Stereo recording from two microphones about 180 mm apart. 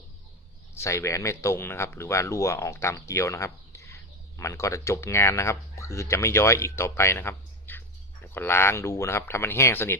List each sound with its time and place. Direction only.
0.7 s speech: 15° left (ahead or behind)